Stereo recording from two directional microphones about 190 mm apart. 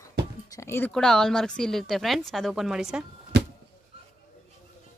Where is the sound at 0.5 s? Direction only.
15° left (ahead or behind).